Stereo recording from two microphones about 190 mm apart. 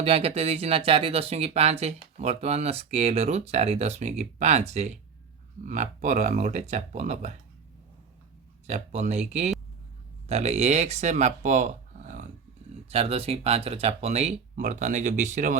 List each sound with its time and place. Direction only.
0.0 s speech: 30° right (ahead or behind)
8.6 s speech: 35° right (ahead or behind)